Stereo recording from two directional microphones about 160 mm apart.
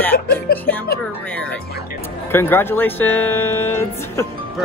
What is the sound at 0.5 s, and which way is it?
Speech, 75° left (ahead or behind).